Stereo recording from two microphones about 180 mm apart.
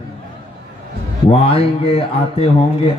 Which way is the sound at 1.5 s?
30° left (ahead or behind).